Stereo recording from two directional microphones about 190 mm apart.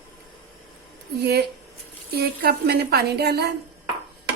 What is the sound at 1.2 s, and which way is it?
Speech, 55° right (ahead or behind).